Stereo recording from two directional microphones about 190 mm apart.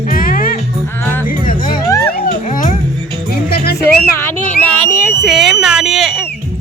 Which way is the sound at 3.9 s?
10° left (ahead or behind).